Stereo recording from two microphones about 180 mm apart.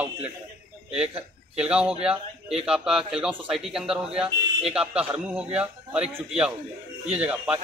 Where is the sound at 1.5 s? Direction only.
5° right (ahead or behind).